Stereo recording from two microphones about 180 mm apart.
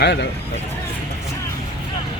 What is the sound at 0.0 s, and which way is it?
Speech, 70° left (ahead or behind).